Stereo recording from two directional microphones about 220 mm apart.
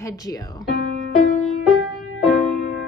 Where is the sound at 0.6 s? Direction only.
45° left (ahead or behind).